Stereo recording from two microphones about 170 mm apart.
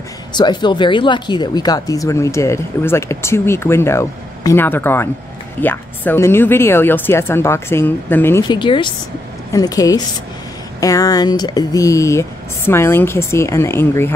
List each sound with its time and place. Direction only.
0.3 s speech: 25° left (ahead or behind)
8.5 s a woman's voice: 30° left (ahead or behind); by 14.1 s 15° left (ahead or behind)